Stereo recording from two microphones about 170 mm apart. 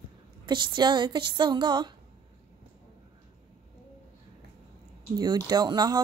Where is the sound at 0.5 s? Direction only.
25° right (ahead or behind).